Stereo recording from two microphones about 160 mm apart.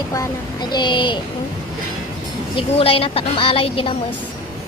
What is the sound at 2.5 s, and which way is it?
A woman's voice, 35° left (ahead or behind).